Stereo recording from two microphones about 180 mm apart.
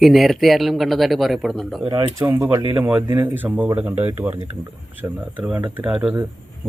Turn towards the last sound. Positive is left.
turn(degrees=-10)  # may be behind; listen again after turning